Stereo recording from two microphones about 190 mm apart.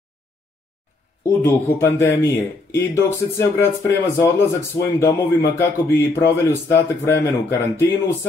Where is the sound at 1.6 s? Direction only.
15° left (ahead or behind).